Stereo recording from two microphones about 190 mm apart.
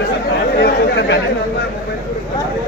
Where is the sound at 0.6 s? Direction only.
60° left (ahead or behind).